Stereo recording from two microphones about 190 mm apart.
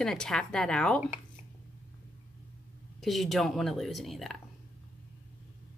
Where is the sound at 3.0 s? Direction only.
Centre (ahead or behind).